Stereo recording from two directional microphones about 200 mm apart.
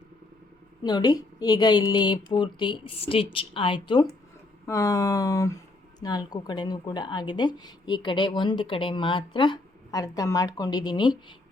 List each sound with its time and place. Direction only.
0.8 s speech: 20° left (ahead or behind)